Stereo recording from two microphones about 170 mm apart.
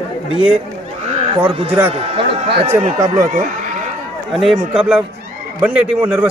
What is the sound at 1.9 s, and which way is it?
Speech, 35° right (ahead or behind).